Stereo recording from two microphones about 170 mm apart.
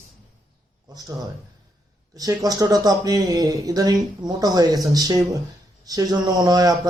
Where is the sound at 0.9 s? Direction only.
20° right (ahead or behind).